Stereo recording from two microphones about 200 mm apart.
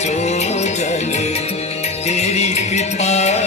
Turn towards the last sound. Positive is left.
turn(degrees=35)  # may be behind; listen again after turning